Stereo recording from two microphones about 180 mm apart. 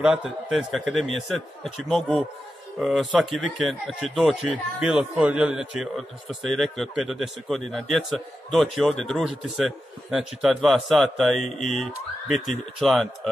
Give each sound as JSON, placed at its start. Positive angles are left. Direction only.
{"t": 0.0, "sound": "a man's voice", "side_deg": -5}